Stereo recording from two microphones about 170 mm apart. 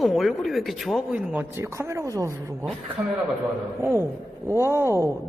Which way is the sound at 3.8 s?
15° right (ahead or behind).